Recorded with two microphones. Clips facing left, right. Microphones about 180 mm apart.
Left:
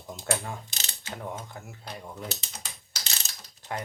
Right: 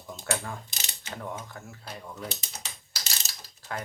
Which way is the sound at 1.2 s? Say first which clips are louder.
Even; 15° left (ahead or behind).